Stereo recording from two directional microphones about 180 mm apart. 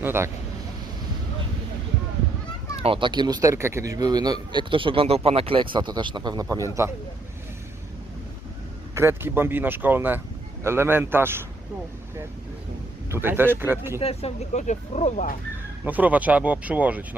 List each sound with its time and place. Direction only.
0.0 s speech: 15° right (ahead or behind)
2.8 s speech: 30° right (ahead or behind)
9.0 s speech: 15° right (ahead or behind)
13.1 s speech: 15° right (ahead or behind)
14.0 s speech: 35° left (ahead or behind)
15.8 s speech: 10° right (ahead or behind)